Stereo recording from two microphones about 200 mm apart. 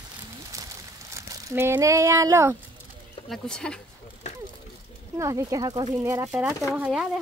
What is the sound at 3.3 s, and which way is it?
Speech, 5° left (ahead or behind).